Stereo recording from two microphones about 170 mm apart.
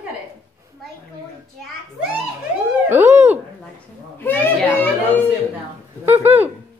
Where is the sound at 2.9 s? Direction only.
15° right (ahead or behind).